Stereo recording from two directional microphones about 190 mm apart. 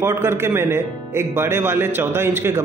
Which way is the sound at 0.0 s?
15° right (ahead or behind).